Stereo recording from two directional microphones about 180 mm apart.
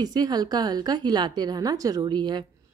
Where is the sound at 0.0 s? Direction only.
20° right (ahead or behind).